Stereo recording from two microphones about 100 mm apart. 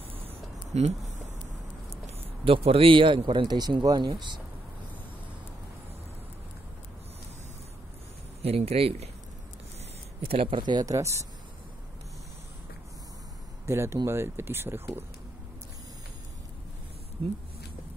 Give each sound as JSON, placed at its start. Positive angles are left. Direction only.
{"t": 0.7, "sound": "speech", "side_deg": -90}
{"t": 2.4, "sound": "a man's voice", "side_deg": -70}
{"t": 8.4, "sound": "speech", "side_deg": -90}
{"t": 10.2, "sound": "speech", "side_deg": -70}
{"t": 13.7, "sound": "speech", "side_deg": -25}
{"t": 17.2, "sound": "a man's voice", "side_deg": -55}